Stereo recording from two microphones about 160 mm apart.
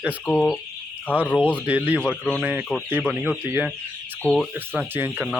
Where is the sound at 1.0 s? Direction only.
10° left (ahead or behind).